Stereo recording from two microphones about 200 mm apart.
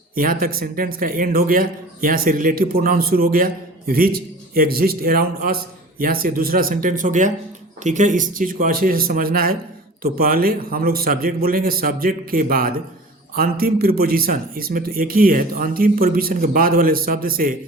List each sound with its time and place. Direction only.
0.2 s a man's voice: 45° right (ahead or behind)